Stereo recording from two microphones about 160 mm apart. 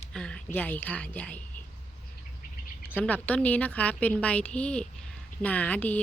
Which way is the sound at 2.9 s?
10° left (ahead or behind).